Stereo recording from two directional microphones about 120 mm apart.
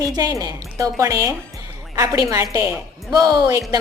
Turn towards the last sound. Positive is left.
turn(degrees=-30)  # may be behind; listen again after turning